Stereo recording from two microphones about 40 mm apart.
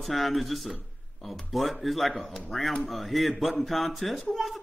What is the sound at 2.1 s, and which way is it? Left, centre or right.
Speech, centre.